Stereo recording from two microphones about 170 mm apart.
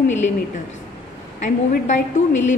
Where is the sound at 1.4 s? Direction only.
45° left (ahead or behind).